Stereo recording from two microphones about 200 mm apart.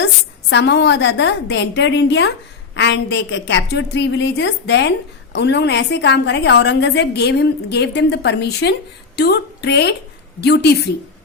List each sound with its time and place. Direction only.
0.5 s a woman's voice: 60° left (ahead or behind)